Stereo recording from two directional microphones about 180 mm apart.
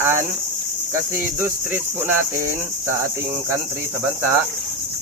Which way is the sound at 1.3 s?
10° right (ahead or behind).